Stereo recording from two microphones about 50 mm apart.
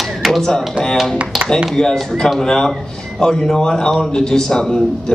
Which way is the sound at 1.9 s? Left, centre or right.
Centre.